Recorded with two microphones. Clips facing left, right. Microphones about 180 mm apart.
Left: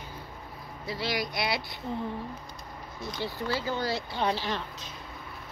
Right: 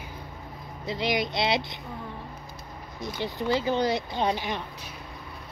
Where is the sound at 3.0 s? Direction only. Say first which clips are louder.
Right 3 dB; 15° right (ahead or behind).